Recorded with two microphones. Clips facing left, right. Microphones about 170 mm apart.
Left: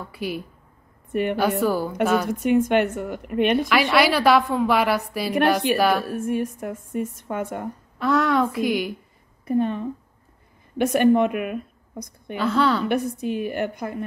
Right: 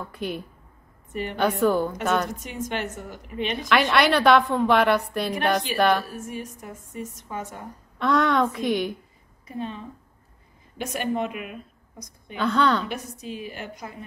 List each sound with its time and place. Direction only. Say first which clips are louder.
0.1 s a woman's voice: left 3 dB; 5° left (ahead or behind)
1.6 s a woman's voice: even; 5° left (ahead or behind)
2.3 s speech: left 12 dB; 60° left (ahead or behind)
3.6 s a woman's voice: left 1 dB; 5° left (ahead or behind)
6.0 s speech: left 10 dB; 60° left (ahead or behind)
8.0 s a woman's voice: left 1 dB; centre (ahead or behind)
9.5 s speech: left 11 dB; 55° left (ahead or behind)
12.4 s a woman's voice: left 1 dB; 5° left (ahead or behind)
12.8 s speech: left 10 dB; 55° left (ahead or behind)